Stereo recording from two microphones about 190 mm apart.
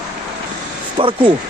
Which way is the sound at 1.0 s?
25° right (ahead or behind).